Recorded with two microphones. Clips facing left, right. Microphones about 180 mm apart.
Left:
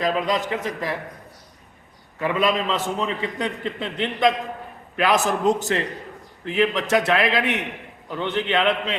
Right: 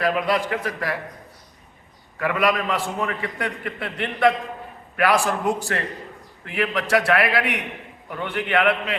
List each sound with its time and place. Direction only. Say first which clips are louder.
0.0 s a man's voice: right 1 dB; 20° left (ahead or behind)
2.2 s a man's voice: even; 25° left (ahead or behind)